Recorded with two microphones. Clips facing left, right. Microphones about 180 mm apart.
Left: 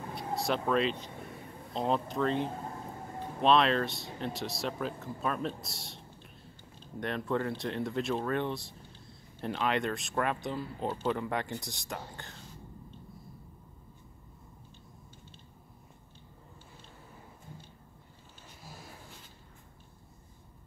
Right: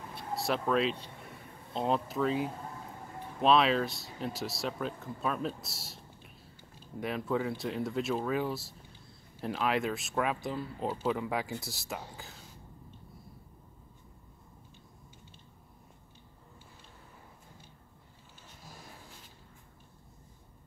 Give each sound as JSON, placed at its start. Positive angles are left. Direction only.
{"t": 0.3, "sound": "speech", "side_deg": 0}